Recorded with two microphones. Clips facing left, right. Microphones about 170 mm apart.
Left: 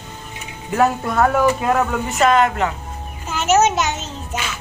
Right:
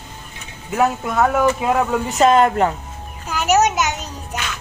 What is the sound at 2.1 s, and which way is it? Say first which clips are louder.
Speech: right 2 dB; 35° right (ahead or behind).